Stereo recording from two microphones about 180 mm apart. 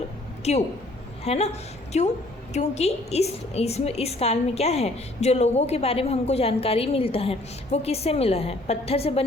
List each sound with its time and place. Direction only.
0.5 s a woman's voice: 35° left (ahead or behind)